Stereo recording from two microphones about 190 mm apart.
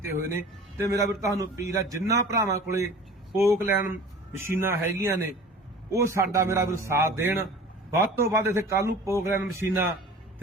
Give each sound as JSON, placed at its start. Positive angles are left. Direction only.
{"t": 0.3, "sound": "a man's voice", "side_deg": -15}